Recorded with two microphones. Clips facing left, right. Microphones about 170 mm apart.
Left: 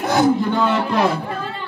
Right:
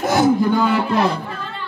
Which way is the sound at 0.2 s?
5° right (ahead or behind).